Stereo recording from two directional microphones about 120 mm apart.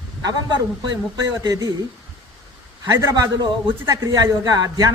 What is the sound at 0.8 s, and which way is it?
Speech, 35° right (ahead or behind).